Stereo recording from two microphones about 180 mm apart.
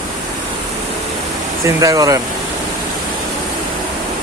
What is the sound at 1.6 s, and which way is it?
Speech, 20° right (ahead or behind).